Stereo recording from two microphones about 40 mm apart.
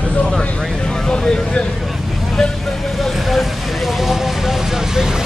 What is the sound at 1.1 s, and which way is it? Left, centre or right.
Vehicle, left.